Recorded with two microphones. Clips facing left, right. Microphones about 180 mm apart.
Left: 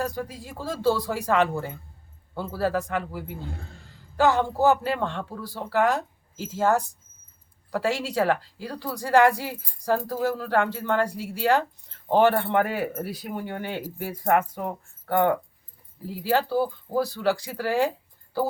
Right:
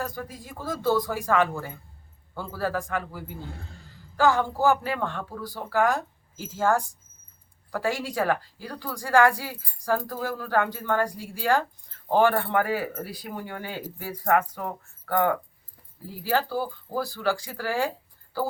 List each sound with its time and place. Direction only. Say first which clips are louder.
0.2 s speech: left 3 dB; 30° left (ahead or behind)